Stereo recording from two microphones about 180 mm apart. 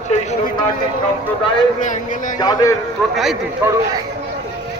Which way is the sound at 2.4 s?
20° left (ahead or behind).